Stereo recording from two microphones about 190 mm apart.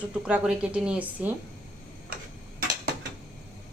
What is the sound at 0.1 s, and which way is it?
A woman's voice, 5° right (ahead or behind).